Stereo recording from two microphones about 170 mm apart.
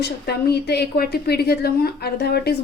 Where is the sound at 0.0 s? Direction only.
75° left (ahead or behind).